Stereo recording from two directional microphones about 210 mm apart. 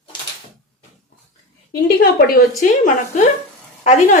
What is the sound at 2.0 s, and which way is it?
A woman's voice, 45° left (ahead or behind).